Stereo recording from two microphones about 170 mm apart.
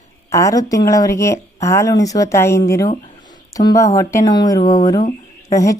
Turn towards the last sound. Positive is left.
turn(degrees=20)  # may be behind; listen again after turning